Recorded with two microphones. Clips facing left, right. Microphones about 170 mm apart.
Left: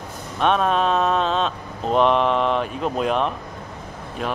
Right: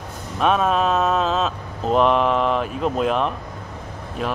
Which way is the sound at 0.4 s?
Centre (ahead or behind).